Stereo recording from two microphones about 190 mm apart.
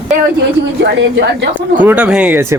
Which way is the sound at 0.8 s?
70° right (ahead or behind).